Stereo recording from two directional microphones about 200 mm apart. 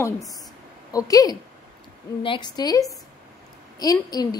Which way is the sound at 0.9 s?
15° left (ahead or behind).